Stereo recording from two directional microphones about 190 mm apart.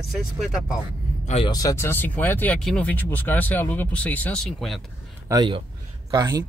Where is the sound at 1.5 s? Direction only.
20° left (ahead or behind); by 4.8 s centre (ahead or behind).